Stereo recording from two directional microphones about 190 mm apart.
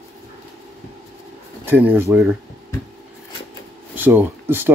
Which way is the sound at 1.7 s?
10° right (ahead or behind).